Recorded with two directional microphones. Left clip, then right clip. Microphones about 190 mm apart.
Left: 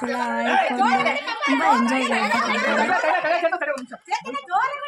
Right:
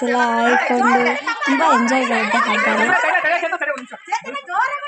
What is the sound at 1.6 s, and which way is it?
Speech, 20° right (ahead or behind).